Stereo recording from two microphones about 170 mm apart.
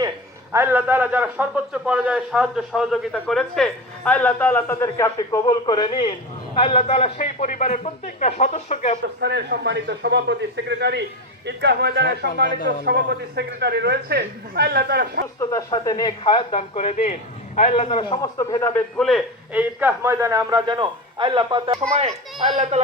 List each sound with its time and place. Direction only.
0.5 s a man's voice: 15° right (ahead or behind); by 9.0 s 40° left (ahead or behind)
9.2 s a man's voice: 85° right; by 15.2 s 65° right (ahead or behind)
15.4 s speech: 20° left (ahead or behind)
16.6 s speech: 40° left (ahead or behind)
18.2 s speech: 20° left (ahead or behind)
18.9 s a man's voice: centre (ahead or behind)
19.8 s a man's voice: 15° right (ahead or behind); by 22.8 s 40° right (ahead or behind)